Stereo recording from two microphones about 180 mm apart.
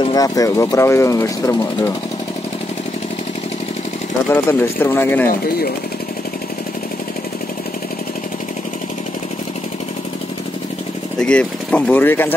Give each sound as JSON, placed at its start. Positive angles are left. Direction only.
{"t": 0.0, "sound": "speech", "side_deg": 20}
{"t": 4.3, "sound": "speech", "side_deg": 15}
{"t": 11.1, "sound": "speech", "side_deg": 5}